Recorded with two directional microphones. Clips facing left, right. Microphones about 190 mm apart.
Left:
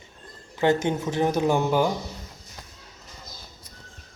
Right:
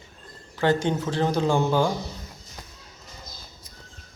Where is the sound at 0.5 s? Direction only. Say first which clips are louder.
Left 1 dB; 20° left (ahead or behind).